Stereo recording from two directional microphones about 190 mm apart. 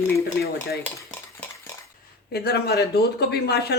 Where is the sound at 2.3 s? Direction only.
60° left (ahead or behind).